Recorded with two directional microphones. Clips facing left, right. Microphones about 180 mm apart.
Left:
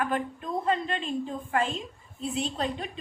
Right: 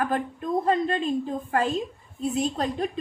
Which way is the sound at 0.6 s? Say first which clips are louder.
Right 4 dB; 40° right (ahead or behind).